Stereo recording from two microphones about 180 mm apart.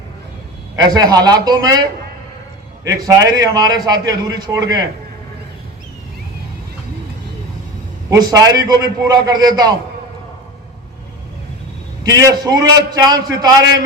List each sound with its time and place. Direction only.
0.9 s a man's voice: 20° right (ahead or behind)
2.8 s a man's voice: 20° right (ahead or behind)
8.1 s a man's voice: 20° right (ahead or behind)
12.0 s a man's voice: 20° right (ahead or behind)